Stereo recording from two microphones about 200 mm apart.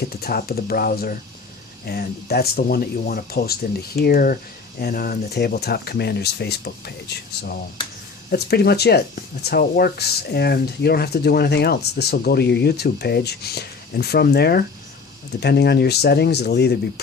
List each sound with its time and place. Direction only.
0.1 s speech: 50° left (ahead or behind)
8.3 s speech: 55° left (ahead or behind)